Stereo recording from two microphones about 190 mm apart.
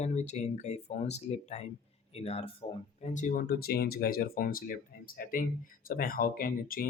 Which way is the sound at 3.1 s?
45° left (ahead or behind).